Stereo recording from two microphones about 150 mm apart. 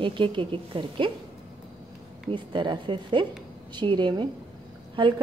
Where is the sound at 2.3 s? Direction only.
30° right (ahead or behind).